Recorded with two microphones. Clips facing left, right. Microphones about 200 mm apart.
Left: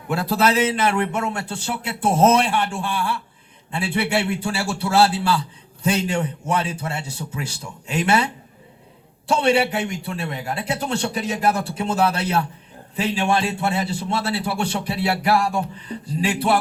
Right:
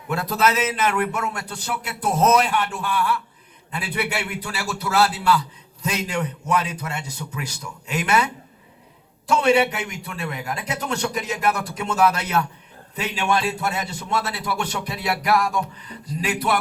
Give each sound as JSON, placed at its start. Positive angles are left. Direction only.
{"t": 0.1, "sound": "a man's voice", "side_deg": 30}